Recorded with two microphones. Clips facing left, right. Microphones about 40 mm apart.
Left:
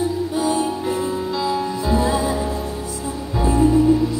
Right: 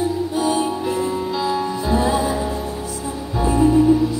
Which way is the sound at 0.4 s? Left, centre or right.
Right.